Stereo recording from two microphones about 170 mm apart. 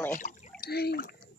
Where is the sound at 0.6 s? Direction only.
70° left (ahead or behind).